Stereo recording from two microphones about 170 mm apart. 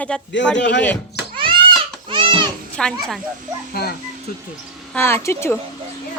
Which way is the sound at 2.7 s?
5° left (ahead or behind).